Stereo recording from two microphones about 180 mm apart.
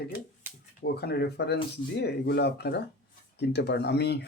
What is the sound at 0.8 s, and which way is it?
Speech, 65° left (ahead or behind).